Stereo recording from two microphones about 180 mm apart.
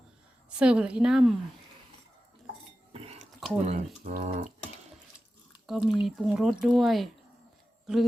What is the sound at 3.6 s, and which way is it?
Speech, 35° right (ahead or behind).